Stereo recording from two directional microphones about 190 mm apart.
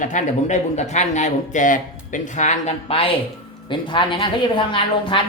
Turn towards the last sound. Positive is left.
turn(degrees=25)  # may be behind; listen again after turning